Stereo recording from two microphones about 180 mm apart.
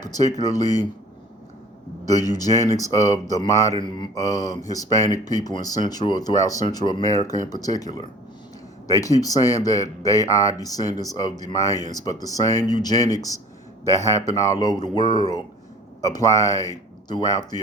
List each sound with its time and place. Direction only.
0.0 s speech: 20° left (ahead or behind)
2.0 s speech: 20° left (ahead or behind)
8.9 s a man's voice: 20° left (ahead or behind)